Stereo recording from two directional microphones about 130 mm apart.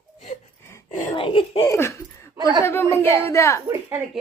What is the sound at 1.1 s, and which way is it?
Speech, 40° left (ahead or behind).